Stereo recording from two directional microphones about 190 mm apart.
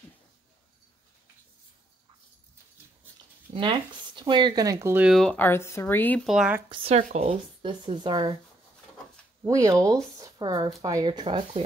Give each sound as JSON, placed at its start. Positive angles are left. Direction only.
{"t": 3.5, "sound": "speech", "side_deg": -25}
{"t": 6.2, "sound": "speech", "side_deg": -5}
{"t": 6.7, "sound": "speech", "side_deg": -30}
{"t": 7.6, "sound": "speech", "side_deg": -25}
{"t": 9.4, "sound": "speech", "side_deg": -15}